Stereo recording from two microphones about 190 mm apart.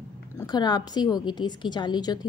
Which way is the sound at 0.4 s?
20° left (ahead or behind).